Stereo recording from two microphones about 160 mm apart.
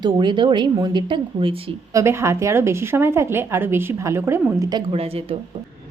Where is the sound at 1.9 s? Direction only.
15° right (ahead or behind).